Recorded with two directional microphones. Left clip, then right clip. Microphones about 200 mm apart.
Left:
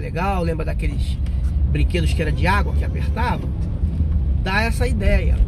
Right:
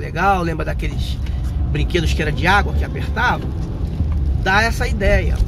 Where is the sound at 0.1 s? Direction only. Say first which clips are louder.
Right 6 dB; 15° left (ahead or behind).